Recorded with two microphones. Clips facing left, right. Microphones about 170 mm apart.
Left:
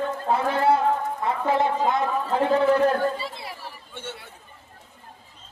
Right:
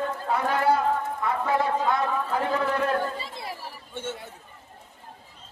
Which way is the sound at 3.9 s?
45° right (ahead or behind).